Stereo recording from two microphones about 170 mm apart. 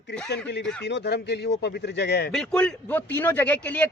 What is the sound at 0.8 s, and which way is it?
Speech, 85° left.